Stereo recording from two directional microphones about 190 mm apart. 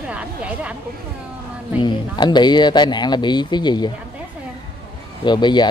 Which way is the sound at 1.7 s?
25° left (ahead or behind).